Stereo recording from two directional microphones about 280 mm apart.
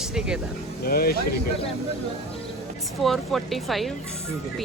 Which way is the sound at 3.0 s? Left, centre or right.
Centre.